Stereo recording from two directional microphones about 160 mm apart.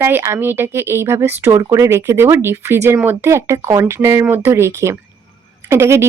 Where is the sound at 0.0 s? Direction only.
15° right (ahead or behind).